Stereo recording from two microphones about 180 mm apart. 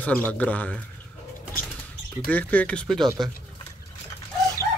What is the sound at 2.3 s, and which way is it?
Speech, 10° left (ahead or behind).